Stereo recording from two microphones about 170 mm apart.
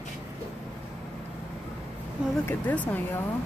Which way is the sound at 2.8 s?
10° left (ahead or behind).